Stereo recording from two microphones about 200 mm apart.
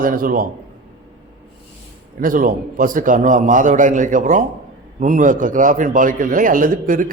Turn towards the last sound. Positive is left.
turn(degrees=-45)  # may be behind; listen again after turning